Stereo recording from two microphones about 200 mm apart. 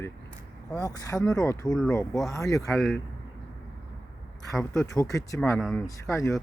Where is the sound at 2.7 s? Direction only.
Centre (ahead or behind).